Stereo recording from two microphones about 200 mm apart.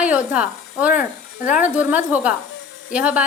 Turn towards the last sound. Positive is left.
turn(degrees=-5)  # may be behind; listen again after turning